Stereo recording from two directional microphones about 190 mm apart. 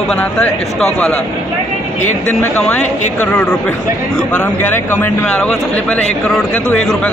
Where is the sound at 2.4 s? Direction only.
10° left (ahead or behind).